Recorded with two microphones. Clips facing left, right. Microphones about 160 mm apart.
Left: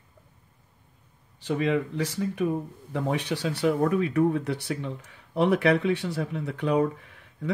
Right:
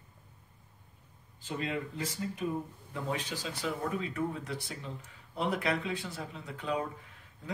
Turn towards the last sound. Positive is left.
turn(degrees=75)  # may be behind; listen again after turning